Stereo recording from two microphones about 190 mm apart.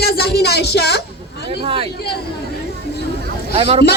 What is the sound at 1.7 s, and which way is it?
Speech, 30° right (ahead or behind).